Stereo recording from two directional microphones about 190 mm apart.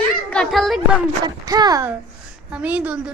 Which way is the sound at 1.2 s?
20° right (ahead or behind).